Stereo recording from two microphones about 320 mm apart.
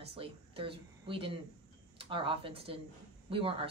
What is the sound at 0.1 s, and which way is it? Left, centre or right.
A woman's voice, centre.